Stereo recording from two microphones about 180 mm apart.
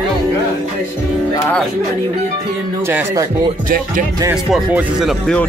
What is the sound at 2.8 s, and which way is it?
Speech, 15° right (ahead or behind).